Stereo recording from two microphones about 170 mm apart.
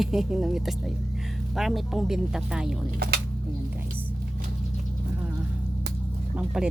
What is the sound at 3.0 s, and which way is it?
Speech, 75° right (ahead or behind).